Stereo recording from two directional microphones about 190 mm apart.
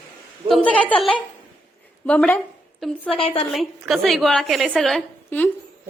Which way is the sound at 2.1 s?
5° left (ahead or behind).